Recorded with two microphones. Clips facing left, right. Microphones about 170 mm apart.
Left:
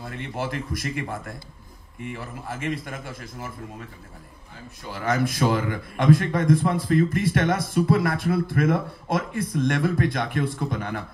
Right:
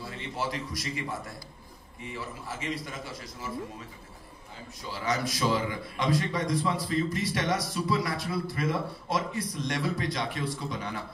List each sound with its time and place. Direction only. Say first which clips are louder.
0.0 s a man's voice: left 3 dB; 55° left (ahead or behind)
4.8 s a man's voice: left 6 dB; 55° left (ahead or behind)